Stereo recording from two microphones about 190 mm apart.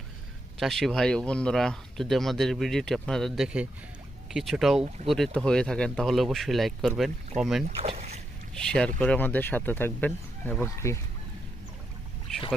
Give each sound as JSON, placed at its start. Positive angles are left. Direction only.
{"t": 0.6, "sound": "speech", "side_deg": 0}
{"t": 7.6, "sound": "speech", "side_deg": -35}
{"t": 9.0, "sound": "speech", "side_deg": 10}
{"t": 12.3, "sound": "boat", "side_deg": 0}